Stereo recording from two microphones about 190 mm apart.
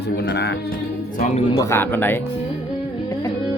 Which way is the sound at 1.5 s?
15° left (ahead or behind).